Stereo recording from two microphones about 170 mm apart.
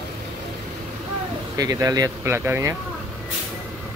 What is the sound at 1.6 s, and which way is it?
Speech, 20° right (ahead or behind).